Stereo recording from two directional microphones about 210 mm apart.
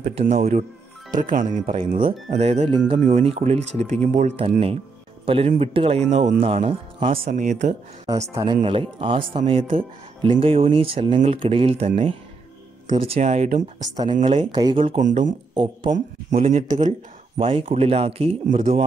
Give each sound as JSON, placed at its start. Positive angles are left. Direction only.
{"t": 0.0, "sound": "speech", "side_deg": -35}
{"t": 2.3, "sound": "speech", "side_deg": -30}
{"t": 8.4, "sound": "speech", "side_deg": -20}
{"t": 14.2, "sound": "speech", "side_deg": -25}
{"t": 15.0, "sound": "speech", "side_deg": -35}
{"t": 15.5, "sound": "speech", "side_deg": -25}
{"t": 15.9, "sound": "speech", "side_deg": -35}
{"t": 17.4, "sound": "speech", "side_deg": -25}